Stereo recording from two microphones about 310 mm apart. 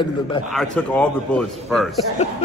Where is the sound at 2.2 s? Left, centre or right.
Left.